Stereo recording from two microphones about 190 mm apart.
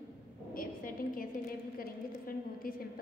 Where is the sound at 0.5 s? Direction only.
50° left (ahead or behind).